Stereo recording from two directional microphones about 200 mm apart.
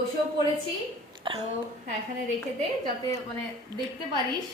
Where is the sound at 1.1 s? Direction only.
25° right (ahead or behind).